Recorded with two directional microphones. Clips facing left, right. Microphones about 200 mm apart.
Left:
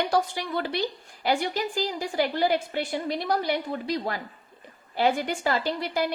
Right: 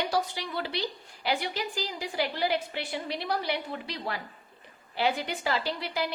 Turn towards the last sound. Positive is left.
turn(degrees=45)  # may be behind; listen again after turning